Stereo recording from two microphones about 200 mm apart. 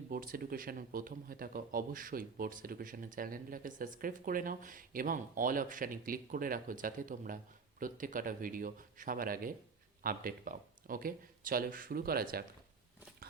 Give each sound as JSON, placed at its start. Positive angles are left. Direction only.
{"t": 0.1, "sound": "speech", "side_deg": -45}